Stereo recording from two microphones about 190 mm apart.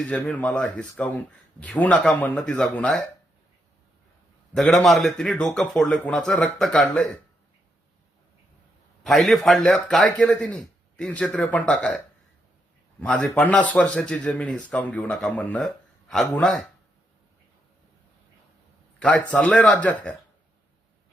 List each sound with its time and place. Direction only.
0.0 s speech: 5° left (ahead or behind)
4.5 s speech: centre (ahead or behind)
9.0 s speech: centre (ahead or behind)
13.0 s a man's voice: 5° left (ahead or behind)
18.9 s a man's voice: 5° left (ahead or behind)